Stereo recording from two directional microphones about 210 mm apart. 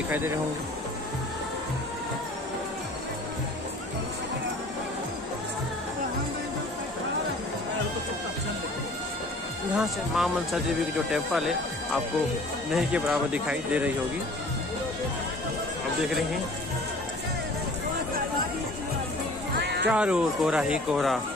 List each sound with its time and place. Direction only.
9.8 s speech: centre (ahead or behind)
19.5 s music: 50° right (ahead or behind)
19.9 s speech: 5° right (ahead or behind)